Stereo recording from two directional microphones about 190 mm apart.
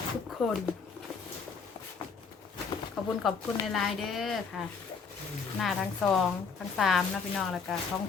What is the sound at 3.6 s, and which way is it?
Speech, centre (ahead or behind).